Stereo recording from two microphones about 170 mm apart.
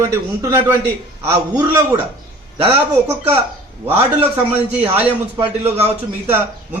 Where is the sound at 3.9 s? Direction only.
10° right (ahead or behind).